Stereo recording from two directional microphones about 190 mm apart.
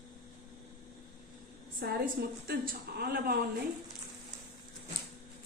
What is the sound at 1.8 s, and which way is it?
A woman's voice, 50° right (ahead or behind).